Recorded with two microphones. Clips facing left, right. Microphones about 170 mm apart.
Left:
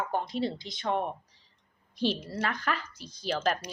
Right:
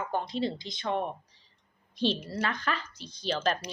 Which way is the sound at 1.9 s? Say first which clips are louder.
Right 1 dB; 25° right (ahead or behind).